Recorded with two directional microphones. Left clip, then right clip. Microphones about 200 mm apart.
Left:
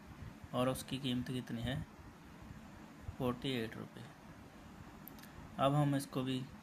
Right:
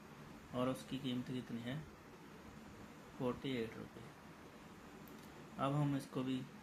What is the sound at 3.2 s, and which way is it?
Speech, 40° left (ahead or behind).